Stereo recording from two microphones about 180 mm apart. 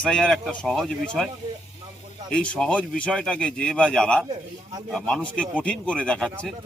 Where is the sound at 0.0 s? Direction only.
5° left (ahead or behind).